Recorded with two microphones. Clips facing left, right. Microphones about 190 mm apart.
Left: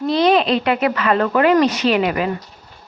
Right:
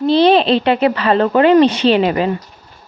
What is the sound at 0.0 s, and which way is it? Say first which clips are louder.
Speech: right 4 dB; 30° right (ahead or behind).